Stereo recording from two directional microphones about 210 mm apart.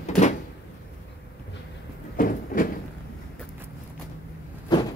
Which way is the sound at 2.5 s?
40° left (ahead or behind).